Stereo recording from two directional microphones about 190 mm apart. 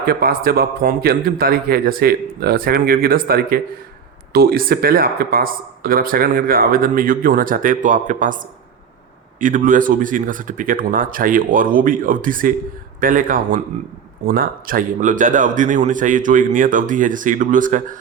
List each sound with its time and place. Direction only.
0.0 s speech: 50° right (ahead or behind)
9.4 s speech: 45° right (ahead or behind)